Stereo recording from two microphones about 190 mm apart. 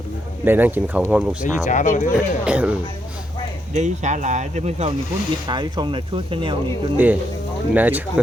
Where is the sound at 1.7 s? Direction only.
40° left (ahead or behind).